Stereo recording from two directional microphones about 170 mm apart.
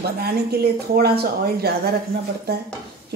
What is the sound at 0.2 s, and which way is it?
Speech, 65° right (ahead or behind).